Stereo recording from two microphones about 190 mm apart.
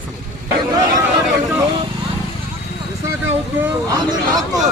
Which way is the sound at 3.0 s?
10° right (ahead or behind).